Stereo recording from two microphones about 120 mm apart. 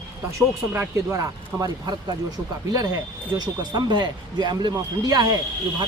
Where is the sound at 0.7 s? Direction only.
20° right (ahead or behind).